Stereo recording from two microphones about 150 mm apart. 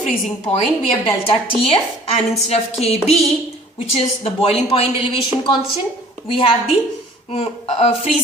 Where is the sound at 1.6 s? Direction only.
40° left (ahead or behind).